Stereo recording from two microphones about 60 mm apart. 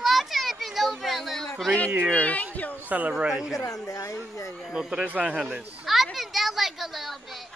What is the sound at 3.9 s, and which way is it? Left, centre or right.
Speech, left.